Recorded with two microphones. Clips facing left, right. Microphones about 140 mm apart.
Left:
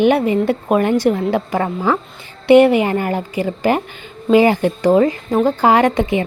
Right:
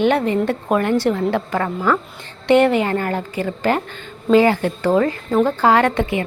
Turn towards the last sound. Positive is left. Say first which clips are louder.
# left 3 dB
turn(degrees=15)  # may be behind; listen again after turning